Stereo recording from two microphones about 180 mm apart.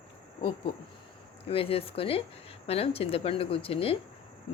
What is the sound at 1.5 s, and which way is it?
Speech, 30° left (ahead or behind).